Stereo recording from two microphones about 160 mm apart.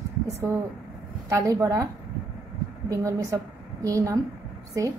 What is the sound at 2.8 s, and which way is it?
A woman's voice, 20° right (ahead or behind).